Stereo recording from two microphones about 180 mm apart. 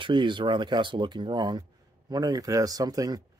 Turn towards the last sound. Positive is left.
turn(degrees=-20)  # may be behind; listen again after turning